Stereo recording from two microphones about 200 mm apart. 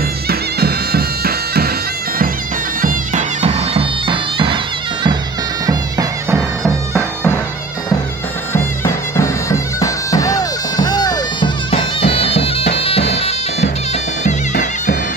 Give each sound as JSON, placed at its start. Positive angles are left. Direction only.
{"t": 0.3, "sound": "bagpipes", "side_deg": -50}
{"t": 2.8, "sound": "bagpipes", "side_deg": -40}
{"t": 5.7, "sound": "music", "side_deg": -20}
{"t": 6.6, "sound": "bagpipes", "side_deg": 5}
{"t": 8.5, "sound": "bagpipes", "side_deg": 15}
{"t": 14.5, "sound": "bagpipes", "side_deg": 45}